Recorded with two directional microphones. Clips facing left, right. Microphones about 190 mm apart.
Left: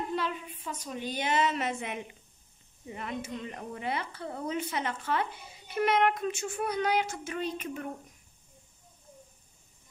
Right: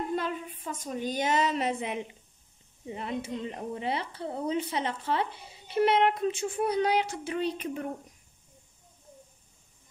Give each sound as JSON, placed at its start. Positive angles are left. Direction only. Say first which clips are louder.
{"t": 0.1, "sound": "a woman's voice", "louder": "right 2 dB", "side_deg": -50}
{"t": 6.6, "sound": "child singing", "louder": "right 3 dB", "side_deg": -30}